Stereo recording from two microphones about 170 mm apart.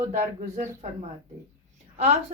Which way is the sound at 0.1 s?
45° right (ahead or behind).